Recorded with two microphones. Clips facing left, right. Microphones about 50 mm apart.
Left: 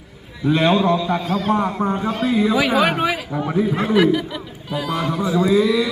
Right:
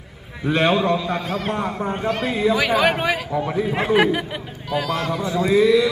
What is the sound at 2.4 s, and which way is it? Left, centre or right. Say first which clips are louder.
Speech: even; centre.